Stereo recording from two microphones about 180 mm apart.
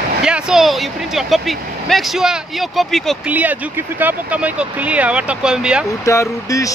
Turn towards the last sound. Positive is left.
turn(degrees=20)  # may be behind; listen again after turning